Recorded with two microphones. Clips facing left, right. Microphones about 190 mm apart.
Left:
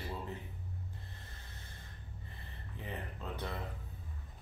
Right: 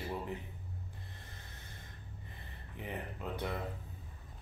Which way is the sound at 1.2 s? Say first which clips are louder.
Right 1 dB; 15° right (ahead or behind).